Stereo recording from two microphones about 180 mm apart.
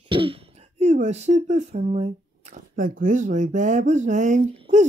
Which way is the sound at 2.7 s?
50° right (ahead or behind).